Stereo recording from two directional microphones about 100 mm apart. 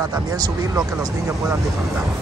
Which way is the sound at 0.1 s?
40° right (ahead or behind).